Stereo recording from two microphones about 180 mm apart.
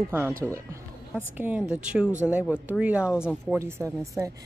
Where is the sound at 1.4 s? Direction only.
5° right (ahead or behind).